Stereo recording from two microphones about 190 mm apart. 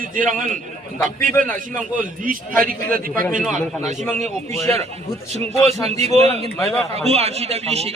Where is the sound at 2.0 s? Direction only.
45° right (ahead or behind).